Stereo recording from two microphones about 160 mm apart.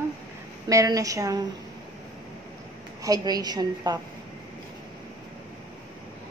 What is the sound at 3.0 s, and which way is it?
A woman's voice, 25° right (ahead or behind).